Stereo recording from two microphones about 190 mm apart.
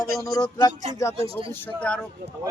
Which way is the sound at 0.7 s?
40° right (ahead or behind).